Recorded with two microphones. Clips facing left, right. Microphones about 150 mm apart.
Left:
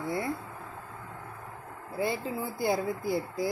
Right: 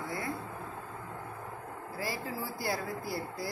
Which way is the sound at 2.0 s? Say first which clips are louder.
Left 6 dB; 20° left (ahead or behind).